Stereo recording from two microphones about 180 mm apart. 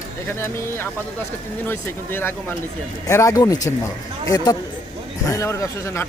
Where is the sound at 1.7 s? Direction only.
10° left (ahead or behind).